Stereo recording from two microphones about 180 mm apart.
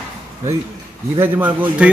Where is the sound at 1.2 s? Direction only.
10° right (ahead or behind).